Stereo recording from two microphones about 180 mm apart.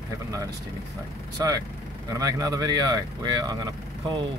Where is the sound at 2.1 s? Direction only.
20° right (ahead or behind).